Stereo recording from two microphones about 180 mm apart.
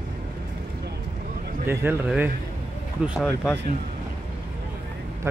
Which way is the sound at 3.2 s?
10° left (ahead or behind).